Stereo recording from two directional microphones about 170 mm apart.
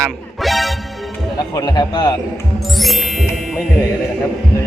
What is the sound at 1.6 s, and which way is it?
Speech, 25° left (ahead or behind).